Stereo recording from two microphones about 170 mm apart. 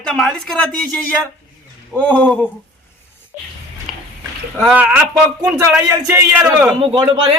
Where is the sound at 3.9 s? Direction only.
Centre (ahead or behind).